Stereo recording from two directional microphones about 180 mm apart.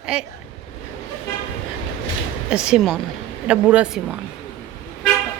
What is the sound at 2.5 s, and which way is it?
Speech, 5° right (ahead or behind).